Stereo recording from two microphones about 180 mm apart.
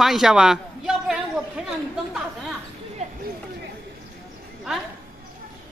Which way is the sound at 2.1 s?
Centre (ahead or behind).